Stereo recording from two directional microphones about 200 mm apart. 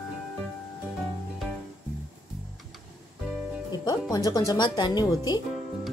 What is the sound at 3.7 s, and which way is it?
Music, 20° left (ahead or behind).